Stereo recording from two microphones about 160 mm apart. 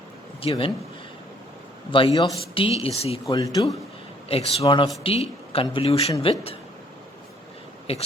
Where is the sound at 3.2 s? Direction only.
20° left (ahead or behind).